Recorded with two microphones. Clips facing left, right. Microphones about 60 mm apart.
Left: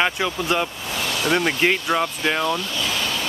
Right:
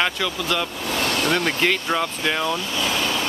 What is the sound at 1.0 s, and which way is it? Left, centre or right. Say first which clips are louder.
Vehicle: right 2 dB; right.